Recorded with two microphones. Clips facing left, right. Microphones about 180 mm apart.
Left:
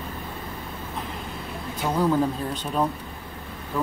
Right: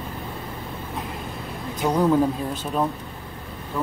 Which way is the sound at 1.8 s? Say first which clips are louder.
Right 3 dB; 15° right (ahead or behind).